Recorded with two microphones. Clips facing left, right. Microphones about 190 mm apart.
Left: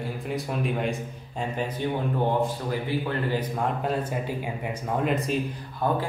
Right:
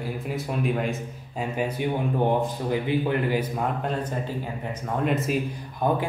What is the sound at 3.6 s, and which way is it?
Speech, 5° left (ahead or behind).